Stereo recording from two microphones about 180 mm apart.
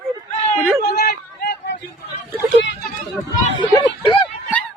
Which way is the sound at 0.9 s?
60° left (ahead or behind).